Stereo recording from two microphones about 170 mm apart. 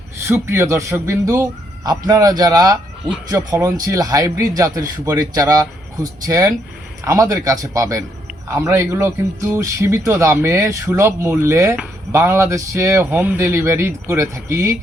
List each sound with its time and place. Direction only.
0.2 s a man's voice: 15° right (ahead or behind)